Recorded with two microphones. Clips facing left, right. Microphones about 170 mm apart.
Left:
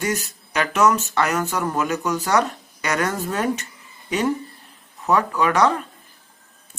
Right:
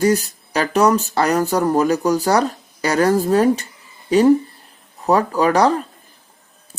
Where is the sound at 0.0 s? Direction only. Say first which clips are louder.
Right 9 dB; 35° right (ahead or behind).